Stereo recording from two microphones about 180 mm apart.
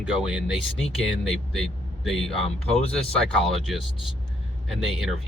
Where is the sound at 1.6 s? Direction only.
Centre (ahead or behind).